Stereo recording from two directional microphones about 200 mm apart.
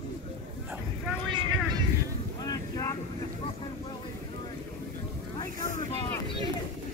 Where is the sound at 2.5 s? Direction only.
20° left (ahead or behind).